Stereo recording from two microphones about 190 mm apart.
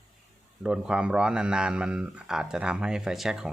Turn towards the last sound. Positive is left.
turn(degrees=0)  # may be behind; listen again after turning